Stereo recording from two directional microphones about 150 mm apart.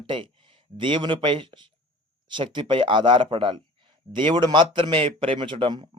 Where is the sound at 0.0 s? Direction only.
35° right (ahead or behind).